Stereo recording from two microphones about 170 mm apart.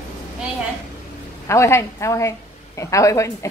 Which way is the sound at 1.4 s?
15° left (ahead or behind).